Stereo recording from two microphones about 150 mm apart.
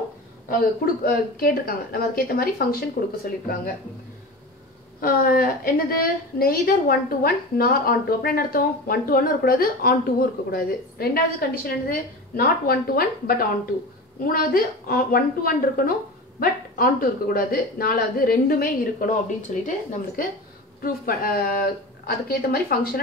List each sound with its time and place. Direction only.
0.5 s a woman's voice: 75° left (ahead or behind)
5.0 s a woman's voice: 75° left (ahead or behind); by 20.2 s 60° left (ahead or behind)
20.8 s speech: 70° left (ahead or behind)